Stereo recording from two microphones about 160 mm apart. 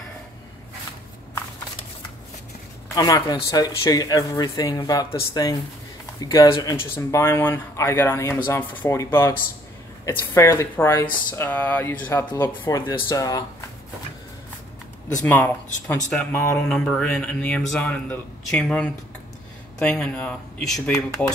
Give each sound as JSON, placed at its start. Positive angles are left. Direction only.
{"t": 3.0, "sound": "a man's voice", "side_deg": 25}
{"t": 15.2, "sound": "a man's voice", "side_deg": 10}